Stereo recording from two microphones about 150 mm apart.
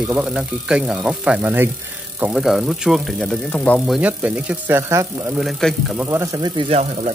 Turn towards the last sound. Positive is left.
turn(degrees=-50)  # may be behind; listen again after turning